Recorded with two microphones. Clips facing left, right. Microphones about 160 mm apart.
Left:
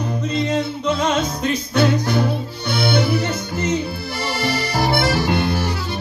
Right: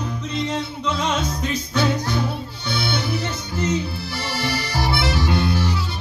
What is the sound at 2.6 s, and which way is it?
Music, 60° left (ahead or behind).